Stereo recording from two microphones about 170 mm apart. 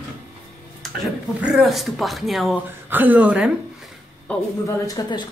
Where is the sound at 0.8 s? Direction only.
5° right (ahead or behind).